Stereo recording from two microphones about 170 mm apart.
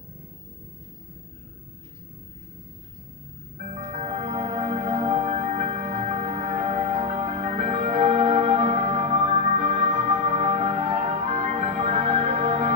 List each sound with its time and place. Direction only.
3.7 s music: 40° right (ahead or behind)